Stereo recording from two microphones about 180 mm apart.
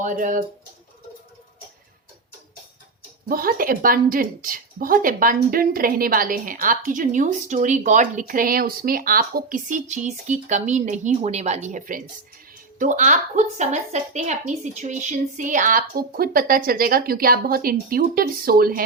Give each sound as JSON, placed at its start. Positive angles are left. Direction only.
{"t": 0.0, "sound": "a woman's voice", "side_deg": -45}
{"t": 3.2, "sound": "a woman's voice", "side_deg": -55}